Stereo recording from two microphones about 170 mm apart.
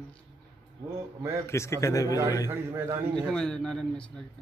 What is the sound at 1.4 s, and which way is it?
Speech, 15° left (ahead or behind).